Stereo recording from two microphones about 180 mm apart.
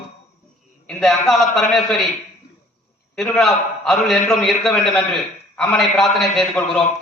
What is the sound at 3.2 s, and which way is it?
A man's voice, centre (ahead or behind).